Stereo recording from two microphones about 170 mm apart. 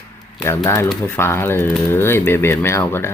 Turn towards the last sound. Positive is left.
turn(degrees=15)  # may be behind; listen again after turning